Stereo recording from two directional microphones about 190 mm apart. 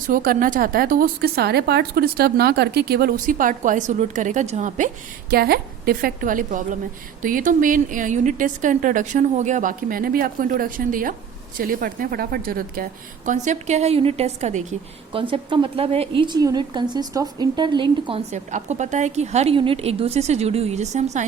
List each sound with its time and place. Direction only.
0.1 s a woman's voice: 45° right (ahead or behind)
5.3 s a woman's voice: 55° right (ahead or behind); by 21.2 s 35° right (ahead or behind)